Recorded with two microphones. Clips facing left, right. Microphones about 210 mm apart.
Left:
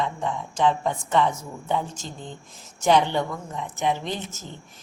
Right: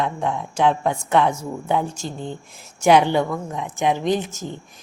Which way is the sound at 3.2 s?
70° right (ahead or behind).